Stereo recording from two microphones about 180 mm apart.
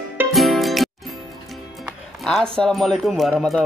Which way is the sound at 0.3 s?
Centre (ahead or behind).